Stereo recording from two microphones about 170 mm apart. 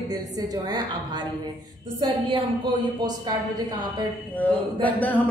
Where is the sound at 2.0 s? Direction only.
30° right (ahead or behind).